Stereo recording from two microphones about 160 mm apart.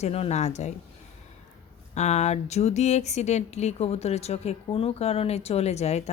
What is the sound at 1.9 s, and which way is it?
Speech, 45° left (ahead or behind).